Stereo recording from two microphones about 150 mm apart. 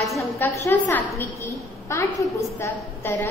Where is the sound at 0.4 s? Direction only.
15° left (ahead or behind).